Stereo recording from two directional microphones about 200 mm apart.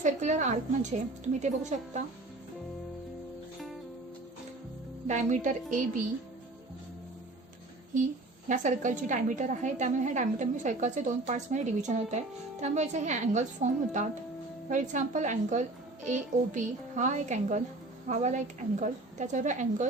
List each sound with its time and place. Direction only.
0.0 s a woman's voice: 35° right (ahead or behind)
5.0 s a woman's voice: 40° right (ahead or behind)
7.9 s a woman's voice: 40° right (ahead or behind)